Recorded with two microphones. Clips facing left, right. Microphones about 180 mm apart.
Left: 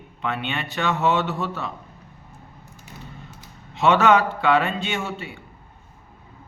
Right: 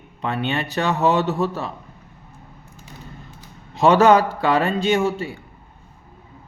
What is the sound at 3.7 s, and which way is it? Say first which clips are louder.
Speech: right 4 dB; 40° right (ahead or behind).